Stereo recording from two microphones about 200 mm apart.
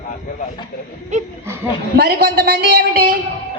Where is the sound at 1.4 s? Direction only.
15° right (ahead or behind).